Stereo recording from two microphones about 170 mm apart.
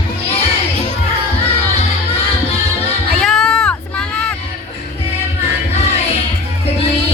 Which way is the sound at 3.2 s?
5° left (ahead or behind).